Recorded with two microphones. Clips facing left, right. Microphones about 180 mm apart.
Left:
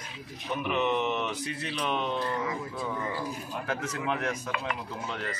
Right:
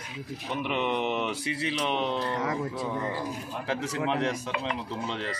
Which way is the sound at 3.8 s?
25° right (ahead or behind).